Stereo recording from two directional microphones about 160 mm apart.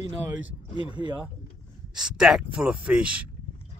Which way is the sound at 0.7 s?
30° left (ahead or behind).